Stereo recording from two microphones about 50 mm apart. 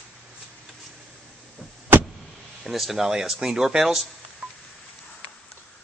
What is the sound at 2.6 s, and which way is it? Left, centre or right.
Speech, centre.